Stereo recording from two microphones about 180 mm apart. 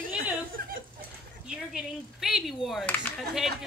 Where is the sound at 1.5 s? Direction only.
5° right (ahead or behind).